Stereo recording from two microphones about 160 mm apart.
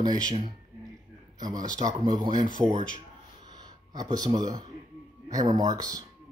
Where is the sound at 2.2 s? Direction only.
25° right (ahead or behind).